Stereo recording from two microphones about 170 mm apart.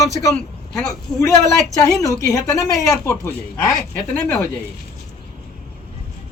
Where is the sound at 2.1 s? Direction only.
20° left (ahead or behind).